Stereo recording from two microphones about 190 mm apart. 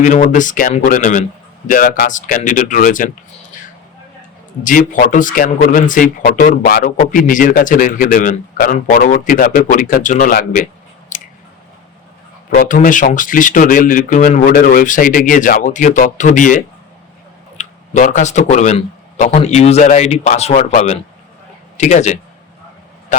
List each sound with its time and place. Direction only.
0.0 s a man's voice: 40° left (ahead or behind)
4.6 s a man's voice: 45° left (ahead or behind)
11.1 s a sound: 40° left (ahead or behind)
12.5 s a man's voice: 45° left (ahead or behind)